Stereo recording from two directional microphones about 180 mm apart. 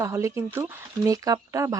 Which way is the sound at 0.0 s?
15° right (ahead or behind).